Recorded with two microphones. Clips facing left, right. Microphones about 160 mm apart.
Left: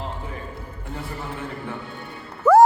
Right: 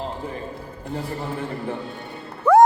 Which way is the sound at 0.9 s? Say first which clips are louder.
Right 4 dB; 35° right (ahead or behind).